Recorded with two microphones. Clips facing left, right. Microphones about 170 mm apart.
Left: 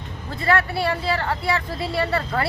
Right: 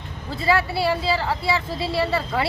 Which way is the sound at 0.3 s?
5° right (ahead or behind).